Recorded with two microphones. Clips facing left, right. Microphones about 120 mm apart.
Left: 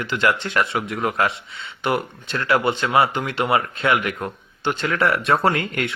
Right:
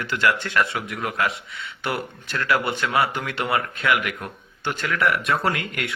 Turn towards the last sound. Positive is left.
turn(degrees=30)  # may be behind; listen again after turning